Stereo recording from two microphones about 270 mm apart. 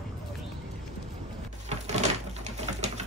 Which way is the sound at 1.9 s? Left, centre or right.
Right.